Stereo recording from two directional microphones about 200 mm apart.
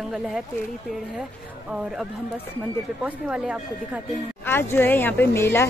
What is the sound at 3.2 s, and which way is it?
Speech, 5° right (ahead or behind).